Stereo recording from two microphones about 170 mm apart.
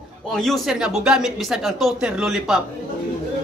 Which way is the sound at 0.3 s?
Centre (ahead or behind).